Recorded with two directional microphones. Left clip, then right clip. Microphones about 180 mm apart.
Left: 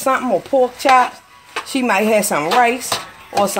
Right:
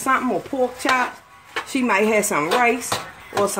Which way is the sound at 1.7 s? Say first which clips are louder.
Left 3 dB; 40° left (ahead or behind).